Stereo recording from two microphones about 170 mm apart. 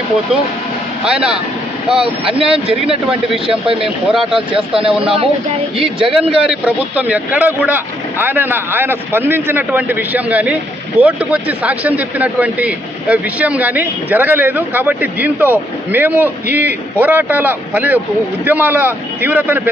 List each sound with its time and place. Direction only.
1.0 s speech: 5° right (ahead or behind)
2.0 s speech: 35° right (ahead or behind)
3.8 s speech: 5° right (ahead or behind)
4.6 s speech: 35° right (ahead or behind)
6.5 s speech: 10° right (ahead or behind)